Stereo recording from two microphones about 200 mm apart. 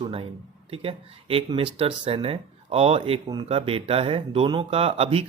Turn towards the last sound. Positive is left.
turn(degrees=-30)  # may be behind; listen again after turning